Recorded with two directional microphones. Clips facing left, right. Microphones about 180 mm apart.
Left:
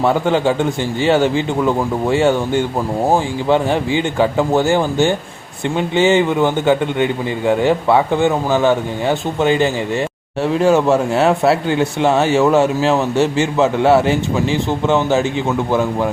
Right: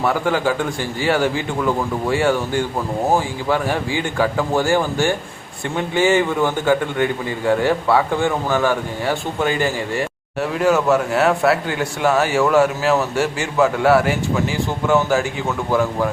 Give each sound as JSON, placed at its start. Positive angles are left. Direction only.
{"t": 0.0, "sound": "a man's voice", "side_deg": 25}